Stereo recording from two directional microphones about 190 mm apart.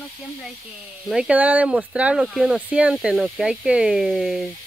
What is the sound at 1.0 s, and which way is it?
Speech, 5° right (ahead or behind).